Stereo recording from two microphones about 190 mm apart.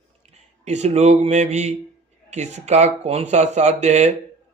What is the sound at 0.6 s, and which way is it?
Speech, 35° right (ahead or behind).